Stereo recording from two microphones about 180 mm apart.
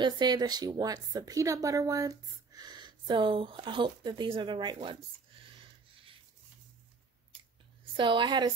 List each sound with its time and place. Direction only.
0.0 s a woman's voice: 25° right (ahead or behind)
7.9 s a woman's voice: 25° right (ahead or behind)